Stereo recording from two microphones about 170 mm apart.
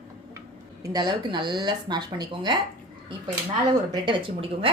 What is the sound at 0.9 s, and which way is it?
A woman's voice, 25° right (ahead or behind).